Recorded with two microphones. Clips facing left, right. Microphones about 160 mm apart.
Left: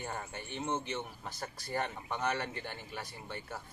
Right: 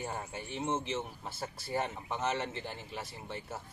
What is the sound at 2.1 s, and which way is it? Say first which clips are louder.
A man's voice: right 1 dB; 25° right (ahead or behind).